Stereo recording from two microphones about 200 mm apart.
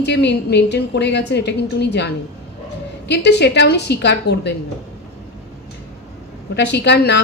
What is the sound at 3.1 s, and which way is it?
A woman's voice, 55° left (ahead or behind).